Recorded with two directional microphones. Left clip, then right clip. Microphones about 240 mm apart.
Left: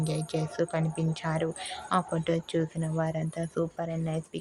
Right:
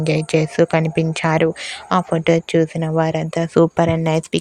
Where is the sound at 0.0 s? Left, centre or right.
Right.